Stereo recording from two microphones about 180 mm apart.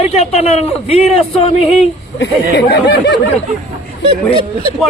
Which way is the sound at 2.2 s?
85° left.